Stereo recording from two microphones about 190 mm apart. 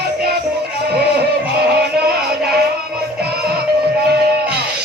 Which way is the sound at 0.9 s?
55° right (ahead or behind).